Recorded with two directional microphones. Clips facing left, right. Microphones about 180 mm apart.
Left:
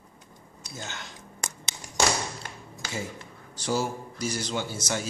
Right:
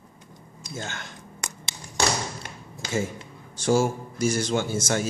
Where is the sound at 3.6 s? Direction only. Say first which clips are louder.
Right 6 dB; 50° right (ahead or behind).